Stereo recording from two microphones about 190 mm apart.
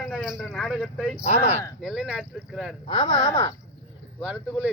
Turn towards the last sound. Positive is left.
turn(degrees=-5)  # may be behind; listen again after turning